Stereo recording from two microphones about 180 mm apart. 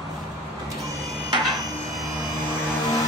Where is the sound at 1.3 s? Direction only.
20° right (ahead or behind).